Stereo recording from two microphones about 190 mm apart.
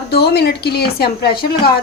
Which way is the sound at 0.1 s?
55° left (ahead or behind).